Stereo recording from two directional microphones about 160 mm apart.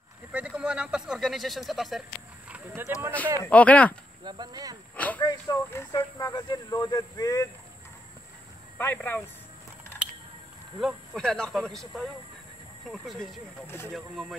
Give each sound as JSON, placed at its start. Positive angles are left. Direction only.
{"t": 0.3, "sound": "speech", "side_deg": -5}
{"t": 2.5, "sound": "speech", "side_deg": -15}
{"t": 3.4, "sound": "speech", "side_deg": 10}
{"t": 4.2, "sound": "speech", "side_deg": -25}
{"t": 4.9, "sound": "a sound", "side_deg": 10}
{"t": 5.2, "sound": "speech", "side_deg": 20}
{"t": 8.7, "sound": "speech", "side_deg": 10}
{"t": 10.8, "sound": "speech", "side_deg": 0}